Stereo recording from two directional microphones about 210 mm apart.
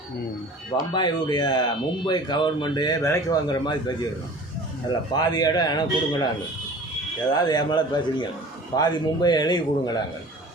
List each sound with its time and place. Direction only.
0.8 s speech: 20° left (ahead or behind)
5.1 s speech: 20° left (ahead or behind)
7.3 s speech: 20° left (ahead or behind)